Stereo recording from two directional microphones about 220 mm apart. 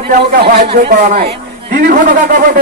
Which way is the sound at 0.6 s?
25° right (ahead or behind).